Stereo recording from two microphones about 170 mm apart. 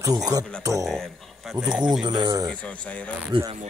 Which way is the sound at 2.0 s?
25° right (ahead or behind).